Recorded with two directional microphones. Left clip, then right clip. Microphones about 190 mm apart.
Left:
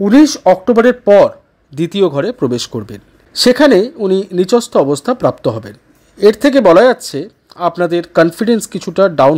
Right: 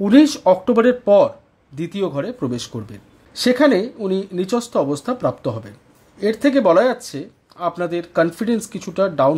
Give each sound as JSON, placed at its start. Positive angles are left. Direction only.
{"t": 0.0, "sound": "speech", "side_deg": 20}